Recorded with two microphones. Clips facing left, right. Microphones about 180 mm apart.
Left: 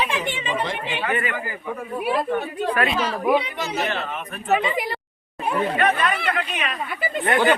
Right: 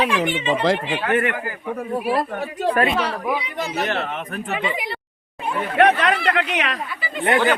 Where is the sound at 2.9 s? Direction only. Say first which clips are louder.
Left 2 dB; 65° right (ahead or behind).